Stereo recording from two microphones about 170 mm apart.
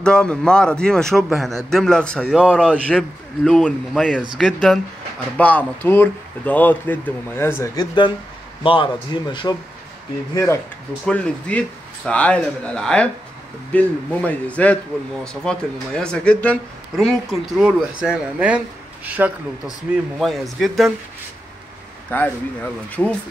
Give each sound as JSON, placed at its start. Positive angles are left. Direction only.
{"t": 0.0, "sound": "a man's voice", "side_deg": 5}
{"t": 22.1, "sound": "speech", "side_deg": 10}